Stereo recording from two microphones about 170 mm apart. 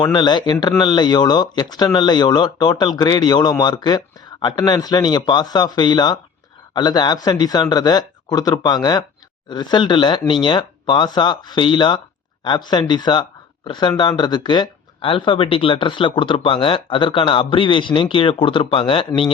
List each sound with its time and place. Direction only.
0.0 s speech: 25° left (ahead or behind)